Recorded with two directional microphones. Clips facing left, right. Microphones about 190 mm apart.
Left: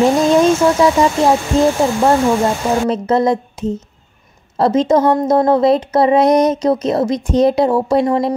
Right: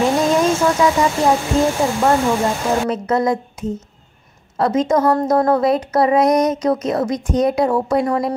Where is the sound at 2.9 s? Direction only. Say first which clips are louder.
Left 3 dB; 25° left (ahead or behind).